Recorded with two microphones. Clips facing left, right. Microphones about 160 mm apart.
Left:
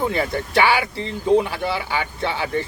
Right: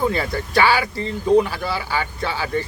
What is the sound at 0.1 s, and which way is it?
Speech, 20° left (ahead or behind).